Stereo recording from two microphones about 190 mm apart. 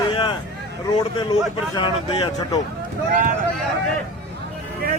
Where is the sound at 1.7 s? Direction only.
25° left (ahead or behind).